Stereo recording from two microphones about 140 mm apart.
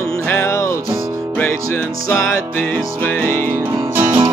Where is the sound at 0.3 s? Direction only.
20° left (ahead or behind).